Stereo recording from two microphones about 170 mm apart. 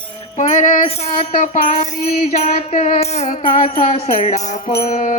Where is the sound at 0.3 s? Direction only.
45° left (ahead or behind).